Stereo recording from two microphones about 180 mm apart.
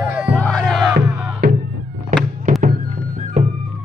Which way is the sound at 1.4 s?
60° right (ahead or behind).